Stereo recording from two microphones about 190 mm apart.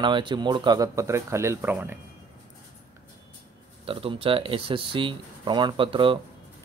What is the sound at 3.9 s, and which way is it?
Speech, 30° right (ahead or behind).